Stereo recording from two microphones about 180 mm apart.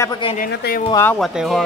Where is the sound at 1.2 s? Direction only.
Centre (ahead or behind).